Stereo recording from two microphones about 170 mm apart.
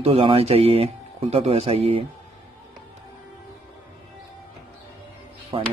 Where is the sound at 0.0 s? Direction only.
35° right (ahead or behind).